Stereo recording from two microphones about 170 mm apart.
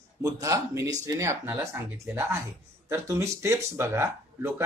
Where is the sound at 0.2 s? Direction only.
20° right (ahead or behind).